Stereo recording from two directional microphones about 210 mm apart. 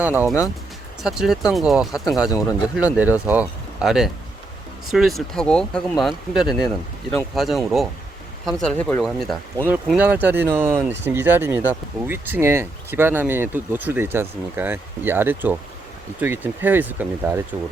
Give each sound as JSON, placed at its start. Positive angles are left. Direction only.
{"t": 0.0, "sound": "speech", "side_deg": -10}
{"t": 2.3, "sound": "speech", "side_deg": 15}
{"t": 2.7, "sound": "speech", "side_deg": -5}